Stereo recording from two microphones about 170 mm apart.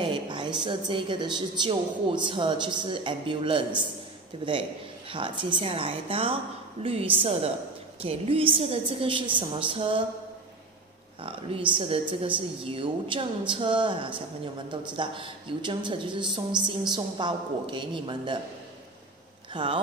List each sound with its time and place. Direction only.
0.0 s a sound: 25° right (ahead or behind)
0.7 s speech: 30° right (ahead or behind)
5.1 s a woman's voice: 30° right (ahead or behind)
11.2 s a woman's voice: 30° right (ahead or behind)
19.5 s speech: 30° right (ahead or behind)